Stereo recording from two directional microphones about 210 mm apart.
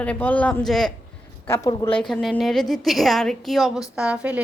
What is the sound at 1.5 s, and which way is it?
Speech, 15° left (ahead or behind).